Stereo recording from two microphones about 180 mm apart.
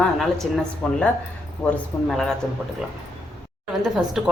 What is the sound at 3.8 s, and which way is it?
Speech, centre (ahead or behind).